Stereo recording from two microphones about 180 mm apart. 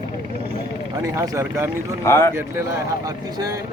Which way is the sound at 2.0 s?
15° left (ahead or behind).